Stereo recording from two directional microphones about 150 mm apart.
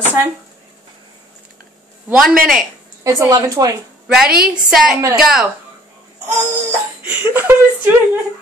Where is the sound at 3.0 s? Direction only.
20° right (ahead or behind).